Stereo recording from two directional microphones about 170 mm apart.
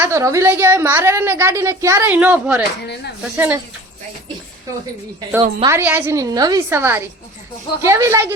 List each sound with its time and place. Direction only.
0.0 s a woman's voice: 15° right (ahead or behind)
2.8 s speech: 80° left
3.3 s a woman's voice: 10° right (ahead or behind)
5.6 s a woman's voice: 15° right (ahead or behind)